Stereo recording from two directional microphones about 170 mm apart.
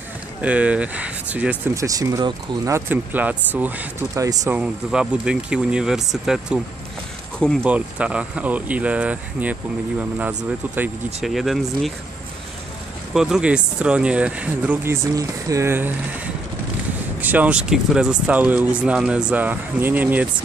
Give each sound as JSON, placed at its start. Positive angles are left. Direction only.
{"t": 0.4, "sound": "speech", "side_deg": -10}
{"t": 1.7, "sound": "speech", "side_deg": -20}
{"t": 4.6, "sound": "speech", "side_deg": -5}
{"t": 7.6, "sound": "speech", "side_deg": -10}
{"t": 13.1, "sound": "speech", "side_deg": -5}
{"t": 17.2, "sound": "speech", "side_deg": -10}